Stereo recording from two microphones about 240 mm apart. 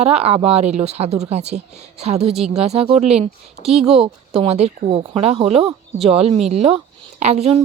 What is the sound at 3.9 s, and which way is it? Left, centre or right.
Speech, right.